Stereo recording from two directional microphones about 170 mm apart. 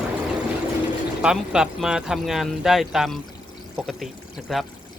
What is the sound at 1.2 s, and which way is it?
Speech, 5° right (ahead or behind).